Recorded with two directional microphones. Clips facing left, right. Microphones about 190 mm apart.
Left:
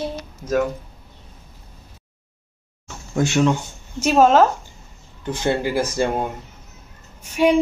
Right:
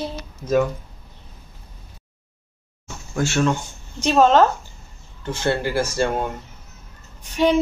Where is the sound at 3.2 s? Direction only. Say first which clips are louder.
Left 2 dB; 15° left (ahead or behind).